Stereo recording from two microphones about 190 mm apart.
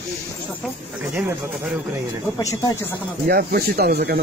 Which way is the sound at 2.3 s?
20° left (ahead or behind).